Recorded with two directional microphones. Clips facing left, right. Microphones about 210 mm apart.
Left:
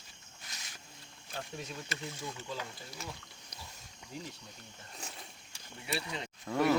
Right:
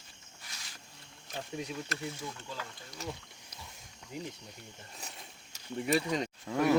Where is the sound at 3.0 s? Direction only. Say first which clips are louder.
Right 5 dB; 40° right (ahead or behind).